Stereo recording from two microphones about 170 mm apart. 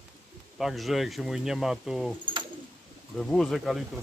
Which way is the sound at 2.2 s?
30° right (ahead or behind).